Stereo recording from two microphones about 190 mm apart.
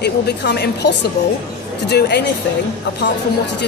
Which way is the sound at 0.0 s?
60° left (ahead or behind).